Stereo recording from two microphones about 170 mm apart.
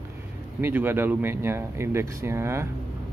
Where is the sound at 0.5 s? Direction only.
15° right (ahead or behind).